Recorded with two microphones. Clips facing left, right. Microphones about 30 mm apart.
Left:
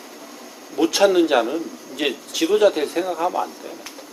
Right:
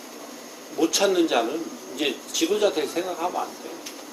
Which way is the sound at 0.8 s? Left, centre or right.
Left.